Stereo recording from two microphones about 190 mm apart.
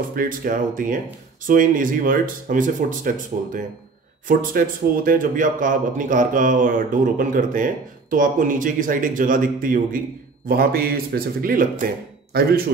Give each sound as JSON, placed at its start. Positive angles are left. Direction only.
{"t": 0.1, "sound": "speech", "side_deg": -50}